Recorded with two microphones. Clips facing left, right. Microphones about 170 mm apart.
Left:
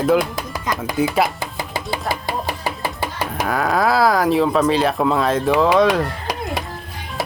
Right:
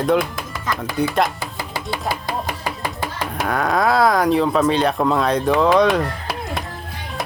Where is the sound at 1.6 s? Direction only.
20° left (ahead or behind).